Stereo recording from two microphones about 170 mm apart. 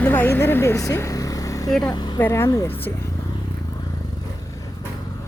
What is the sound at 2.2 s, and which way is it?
Speech, 15° left (ahead or behind).